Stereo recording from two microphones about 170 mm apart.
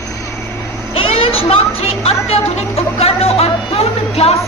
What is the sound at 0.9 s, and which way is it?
Speech, 35° left (ahead or behind).